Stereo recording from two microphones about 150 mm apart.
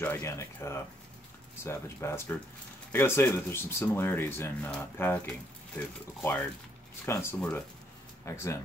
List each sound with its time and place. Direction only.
0.0 s speech: 15° left (ahead or behind)
7.3 s speech: 5° left (ahead or behind)
8.3 s speech: 20° left (ahead or behind)